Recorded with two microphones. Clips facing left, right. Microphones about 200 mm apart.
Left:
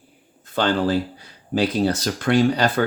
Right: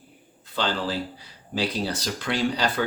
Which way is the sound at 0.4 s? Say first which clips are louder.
Left 7 dB; 50° left (ahead or behind).